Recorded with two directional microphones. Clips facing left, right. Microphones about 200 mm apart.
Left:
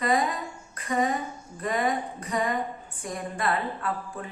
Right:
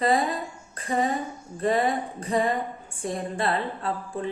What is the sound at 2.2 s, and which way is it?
A woman's voice, 30° right (ahead or behind).